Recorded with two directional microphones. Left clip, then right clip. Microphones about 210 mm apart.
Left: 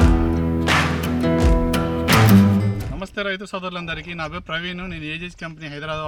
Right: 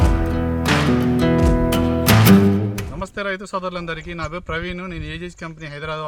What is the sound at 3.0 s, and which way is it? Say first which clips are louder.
A man's voice: even; 20° right (ahead or behind).